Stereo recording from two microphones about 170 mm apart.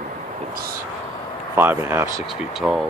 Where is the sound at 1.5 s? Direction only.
10° right (ahead or behind).